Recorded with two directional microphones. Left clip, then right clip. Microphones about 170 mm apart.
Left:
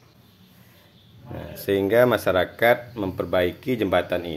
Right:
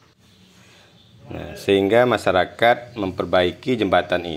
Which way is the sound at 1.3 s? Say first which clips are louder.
Right 5 dB; 15° right (ahead or behind).